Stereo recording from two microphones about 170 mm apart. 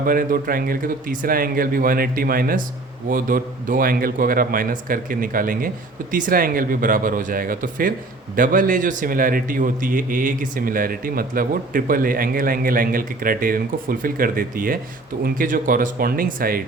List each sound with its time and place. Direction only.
0.0 s a man's voice: 55° right (ahead or behind)